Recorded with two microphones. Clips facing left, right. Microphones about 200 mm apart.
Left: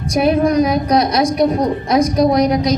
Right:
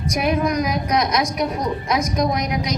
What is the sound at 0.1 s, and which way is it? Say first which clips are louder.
A woman's voice: left 7 dB; 30° left (ahead or behind).